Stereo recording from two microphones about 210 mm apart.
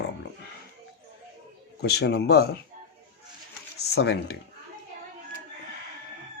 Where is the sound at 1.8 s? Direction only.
50° left (ahead or behind).